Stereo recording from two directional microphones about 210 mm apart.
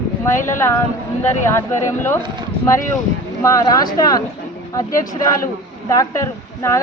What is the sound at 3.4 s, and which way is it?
A woman's voice, 15° left (ahead or behind).